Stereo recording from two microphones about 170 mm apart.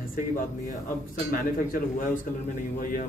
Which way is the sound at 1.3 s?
55° left (ahead or behind).